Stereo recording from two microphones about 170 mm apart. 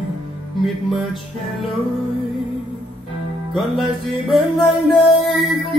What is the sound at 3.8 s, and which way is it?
Music, 25° left (ahead or behind).